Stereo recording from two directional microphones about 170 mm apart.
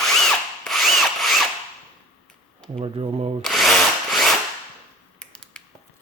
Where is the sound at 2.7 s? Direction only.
35° right (ahead or behind).